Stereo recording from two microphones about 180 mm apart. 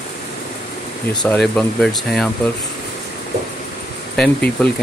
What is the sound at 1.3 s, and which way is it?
Speech, 5° left (ahead or behind).